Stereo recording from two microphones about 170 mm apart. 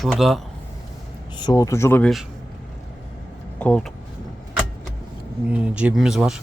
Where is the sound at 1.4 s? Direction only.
20° left (ahead or behind).